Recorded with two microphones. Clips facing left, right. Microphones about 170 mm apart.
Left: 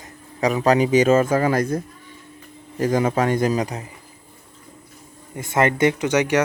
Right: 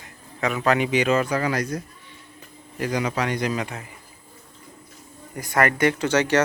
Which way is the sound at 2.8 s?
45° left (ahead or behind).